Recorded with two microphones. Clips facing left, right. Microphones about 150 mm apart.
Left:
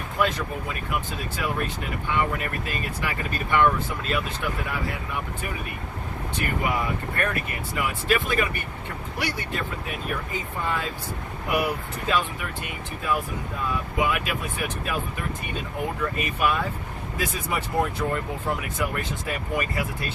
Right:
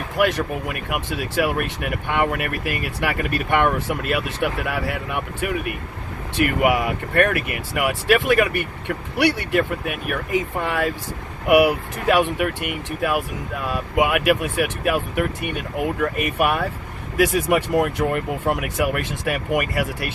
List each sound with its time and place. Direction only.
0.2 s speech: 75° right (ahead or behind)
17.2 s speech: 75° right (ahead or behind)